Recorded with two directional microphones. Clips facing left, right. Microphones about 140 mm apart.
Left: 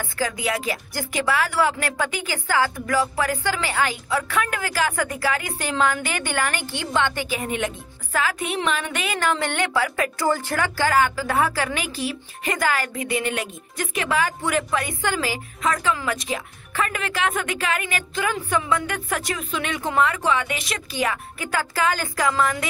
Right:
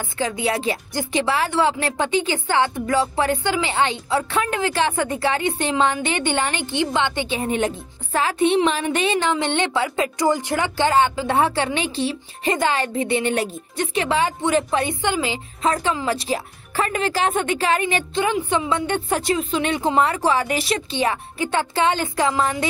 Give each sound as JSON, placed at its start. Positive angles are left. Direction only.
{"t": 0.0, "sound": "a woman's voice", "side_deg": -25}